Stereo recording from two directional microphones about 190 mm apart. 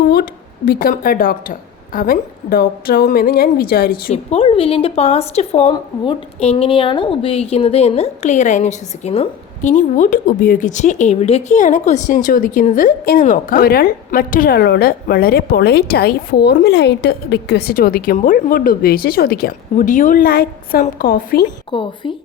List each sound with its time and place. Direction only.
0.1 s speech: 55° left (ahead or behind)
4.1 s speech: 30° left (ahead or behind); by 19.5 s 55° left (ahead or behind)
19.7 s speech: 40° left (ahead or behind)
21.7 s speech: 25° left (ahead or behind)